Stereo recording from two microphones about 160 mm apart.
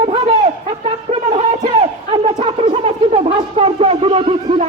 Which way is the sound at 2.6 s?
40° right (ahead or behind).